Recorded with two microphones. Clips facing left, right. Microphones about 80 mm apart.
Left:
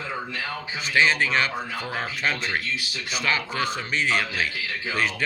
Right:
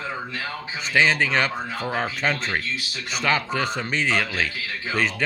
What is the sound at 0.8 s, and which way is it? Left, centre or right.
A man's voice, right.